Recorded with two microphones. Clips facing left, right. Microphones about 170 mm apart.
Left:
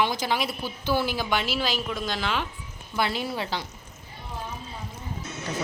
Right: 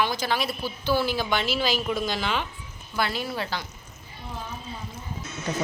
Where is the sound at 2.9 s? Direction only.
25° left (ahead or behind).